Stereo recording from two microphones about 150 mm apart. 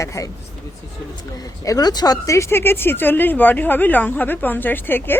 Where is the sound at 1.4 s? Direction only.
25° left (ahead or behind).